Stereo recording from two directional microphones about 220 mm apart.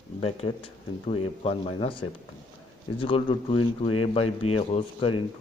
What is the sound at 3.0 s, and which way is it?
Speech, 25° left (ahead or behind).